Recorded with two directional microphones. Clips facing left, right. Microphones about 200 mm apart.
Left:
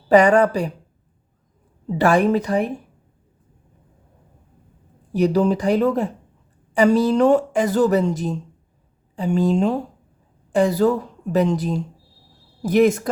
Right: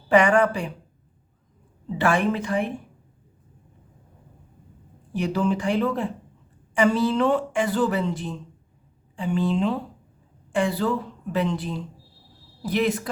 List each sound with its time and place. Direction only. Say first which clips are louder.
0.1 s speech: left 4 dB; 40° left (ahead or behind)
2.0 s speech: left 6 dB; 40° left (ahead or behind)
5.1 s speech: left 6 dB; 40° left (ahead or behind)